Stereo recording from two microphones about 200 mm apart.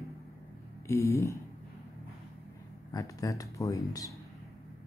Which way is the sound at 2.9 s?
15° left (ahead or behind).